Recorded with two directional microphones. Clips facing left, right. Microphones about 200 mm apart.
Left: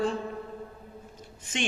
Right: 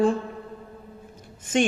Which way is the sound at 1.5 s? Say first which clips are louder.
Right 10 dB; 50° right (ahead or behind).